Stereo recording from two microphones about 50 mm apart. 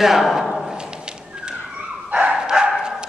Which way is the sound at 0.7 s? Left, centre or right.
Centre.